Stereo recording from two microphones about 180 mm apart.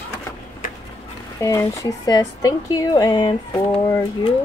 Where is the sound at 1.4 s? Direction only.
20° left (ahead or behind).